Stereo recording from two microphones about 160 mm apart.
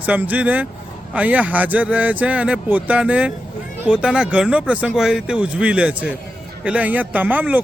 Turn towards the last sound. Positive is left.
turn(degrees=-10)  # may be behind; listen again after turning